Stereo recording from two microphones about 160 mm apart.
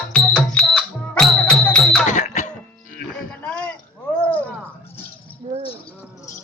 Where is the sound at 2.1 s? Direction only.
50° left (ahead or behind).